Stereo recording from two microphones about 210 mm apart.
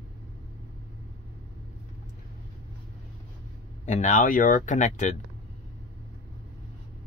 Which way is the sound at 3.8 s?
35° left (ahead or behind).